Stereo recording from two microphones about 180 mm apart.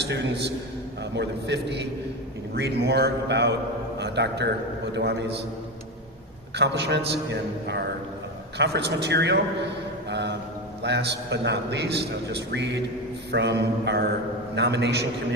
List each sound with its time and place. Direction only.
0.0 s a man's voice: 70° right (ahead or behind)
6.6 s a man's voice: 70° right (ahead or behind)
10.1 s a sound: 70° right (ahead or behind)
10.8 s a man's voice: 70° right (ahead or behind)